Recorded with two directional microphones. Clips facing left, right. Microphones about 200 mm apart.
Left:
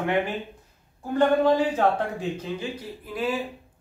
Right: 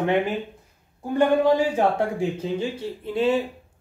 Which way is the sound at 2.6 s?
25° right (ahead or behind).